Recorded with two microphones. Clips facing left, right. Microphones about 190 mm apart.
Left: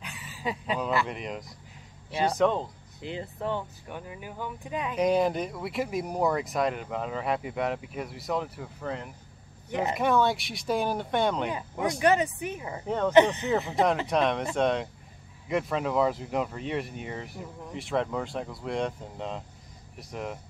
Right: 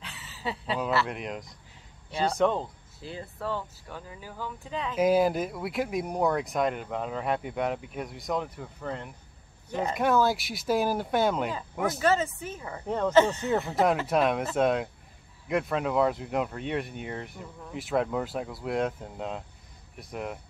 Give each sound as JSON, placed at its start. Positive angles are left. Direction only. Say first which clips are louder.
{"t": 0.0, "sound": "a sound", "louder": "left 2 dB", "side_deg": 10}
{"t": 1.0, "sound": "speech", "louder": "even", "side_deg": 0}
{"t": 3.0, "sound": "speech", "louder": "left 3 dB", "side_deg": 20}
{"t": 4.9, "sound": "speech", "louder": "right 2 dB", "side_deg": -5}
{"t": 9.7, "sound": "speech", "louder": "left 1 dB", "side_deg": 20}
{"t": 9.9, "sound": "speech", "louder": "right 1 dB", "side_deg": 0}
{"t": 12.0, "sound": "speech", "louder": "left 3 dB", "side_deg": 15}
{"t": 12.8, "sound": "speech", "louder": "left 1 dB", "side_deg": 0}
{"t": 13.1, "sound": "speech", "louder": "left 2 dB", "side_deg": 15}
{"t": 14.0, "sound": "speech", "louder": "right 1 dB", "side_deg": -5}